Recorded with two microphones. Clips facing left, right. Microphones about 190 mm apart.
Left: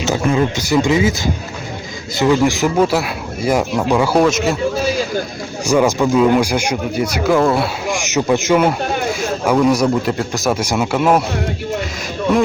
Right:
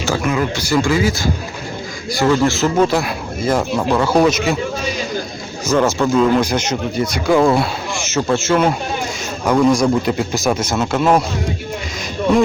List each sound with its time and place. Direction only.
0.0 s speech: 25° left (ahead or behind); by 4.5 s centre (ahead or behind)
5.6 s a man's voice: 10° left (ahead or behind)
7.9 s a man's voice: 15° left (ahead or behind)